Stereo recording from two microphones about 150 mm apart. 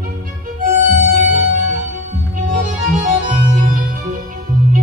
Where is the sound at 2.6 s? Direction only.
60° right (ahead or behind).